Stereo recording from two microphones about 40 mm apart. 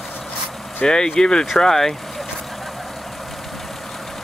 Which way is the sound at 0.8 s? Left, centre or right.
Centre.